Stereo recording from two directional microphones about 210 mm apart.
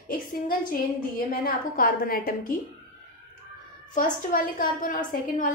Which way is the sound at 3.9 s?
40° left (ahead or behind).